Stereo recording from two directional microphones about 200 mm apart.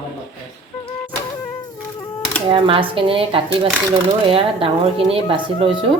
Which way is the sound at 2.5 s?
25° right (ahead or behind).